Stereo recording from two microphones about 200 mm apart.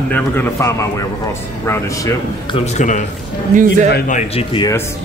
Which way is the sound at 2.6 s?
35° left (ahead or behind).